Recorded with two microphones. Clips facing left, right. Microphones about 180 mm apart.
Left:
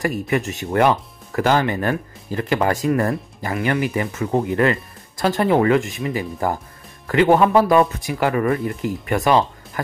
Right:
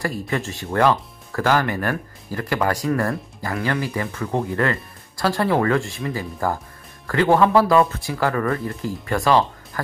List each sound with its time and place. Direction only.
0.0 s speech: 20° left (ahead or behind)